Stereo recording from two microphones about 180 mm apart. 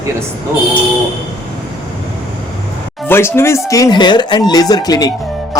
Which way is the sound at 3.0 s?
15° left (ahead or behind).